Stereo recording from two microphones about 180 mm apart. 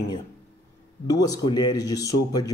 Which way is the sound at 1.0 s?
20° left (ahead or behind).